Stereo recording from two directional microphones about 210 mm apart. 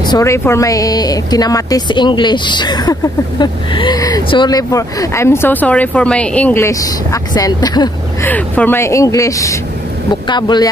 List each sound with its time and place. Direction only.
0.0 s a woman's voice: 15° left (ahead or behind)